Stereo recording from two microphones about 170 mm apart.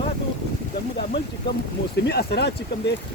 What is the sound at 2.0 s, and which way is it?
Speech, 75° left (ahead or behind).